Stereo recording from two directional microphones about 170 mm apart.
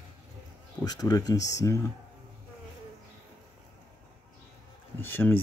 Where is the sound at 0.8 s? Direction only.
20° left (ahead or behind).